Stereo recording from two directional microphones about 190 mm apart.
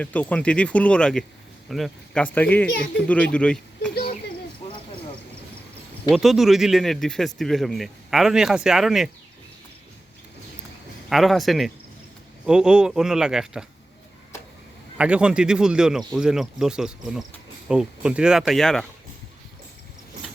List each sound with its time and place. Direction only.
0.0 s a man's voice: 10° left (ahead or behind)
3.9 s a sound: 55° left (ahead or behind)
6.1 s a man's voice: centre (ahead or behind)
11.1 s a man's voice: centre (ahead or behind)
14.9 s a man's voice: 5° right (ahead or behind)